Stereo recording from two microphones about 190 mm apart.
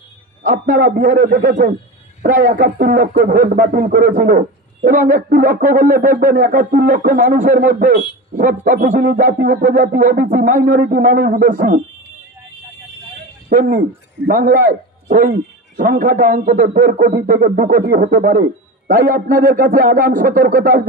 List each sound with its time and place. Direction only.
0.4 s speech: 45° right (ahead or behind)
13.5 s speech: 45° right (ahead or behind)